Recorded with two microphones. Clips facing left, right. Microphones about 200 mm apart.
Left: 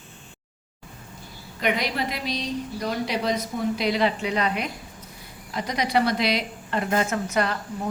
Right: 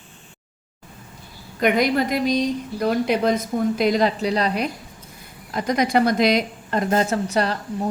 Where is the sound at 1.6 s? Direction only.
45° right (ahead or behind).